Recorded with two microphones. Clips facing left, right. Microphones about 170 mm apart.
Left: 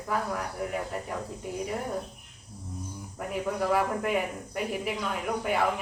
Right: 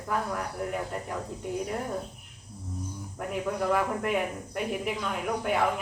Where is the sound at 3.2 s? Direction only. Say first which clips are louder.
Even; centre (ahead or behind).